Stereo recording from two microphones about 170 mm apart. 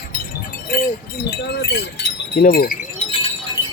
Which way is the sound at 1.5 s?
80° left.